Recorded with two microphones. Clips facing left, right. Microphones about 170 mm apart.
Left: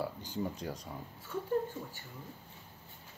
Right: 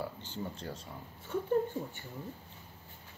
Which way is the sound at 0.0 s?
10° left (ahead or behind).